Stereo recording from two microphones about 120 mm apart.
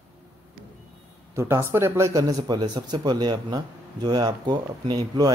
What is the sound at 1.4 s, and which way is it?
Speech, 20° right (ahead or behind).